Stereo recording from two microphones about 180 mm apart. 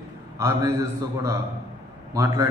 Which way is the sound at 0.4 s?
15° right (ahead or behind).